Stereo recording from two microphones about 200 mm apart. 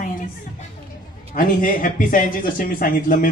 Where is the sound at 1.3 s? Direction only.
40° left (ahead or behind).